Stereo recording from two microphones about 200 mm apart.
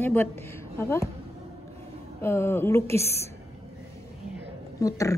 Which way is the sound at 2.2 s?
10° left (ahead or behind).